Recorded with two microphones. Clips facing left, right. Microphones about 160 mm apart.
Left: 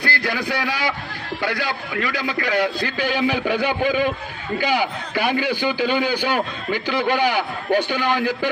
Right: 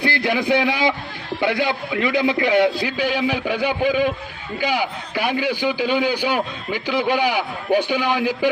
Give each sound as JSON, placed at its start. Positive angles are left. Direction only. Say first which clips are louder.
{"t": 0.0, "sound": "a man's voice", "louder": "right 4 dB", "side_deg": -20}
{"t": 2.8, "sound": "a man's voice", "louder": "even", "side_deg": -10}